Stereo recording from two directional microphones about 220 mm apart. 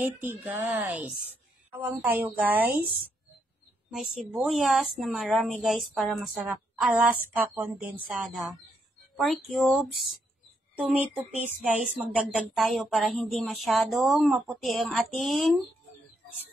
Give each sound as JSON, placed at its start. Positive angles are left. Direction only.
{"t": 0.2, "sound": "a woman's voice", "side_deg": -10}
{"t": 3.9, "sound": "a woman's voice", "side_deg": -5}